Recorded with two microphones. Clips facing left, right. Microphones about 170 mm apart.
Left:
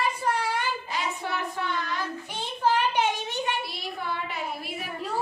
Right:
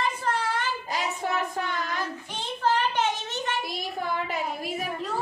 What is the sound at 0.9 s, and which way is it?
Child singing, 40° right (ahead or behind).